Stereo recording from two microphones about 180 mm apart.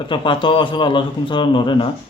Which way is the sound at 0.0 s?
25° left (ahead or behind).